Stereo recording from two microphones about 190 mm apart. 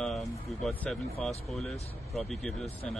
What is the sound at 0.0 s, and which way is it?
Music, centre (ahead or behind).